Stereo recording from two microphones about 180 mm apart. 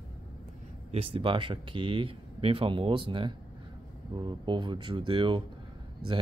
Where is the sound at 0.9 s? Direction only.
30° right (ahead or behind).